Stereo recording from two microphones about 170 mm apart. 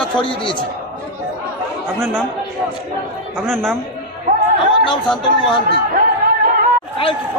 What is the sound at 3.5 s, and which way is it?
Speech, 5° left (ahead or behind).